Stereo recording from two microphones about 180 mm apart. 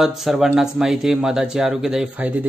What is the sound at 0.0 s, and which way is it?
Speech, centre (ahead or behind).